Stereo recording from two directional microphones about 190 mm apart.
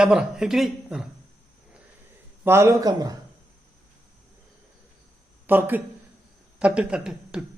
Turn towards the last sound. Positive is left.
turn(degrees=-5)  # may be behind; listen again after turning